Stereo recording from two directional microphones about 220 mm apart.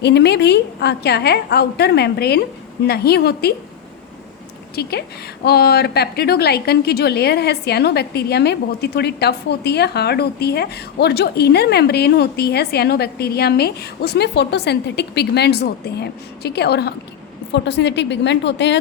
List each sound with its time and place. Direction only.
0.0 s a woman's voice: 50° left (ahead or behind)
4.7 s a woman's voice: 45° left (ahead or behind)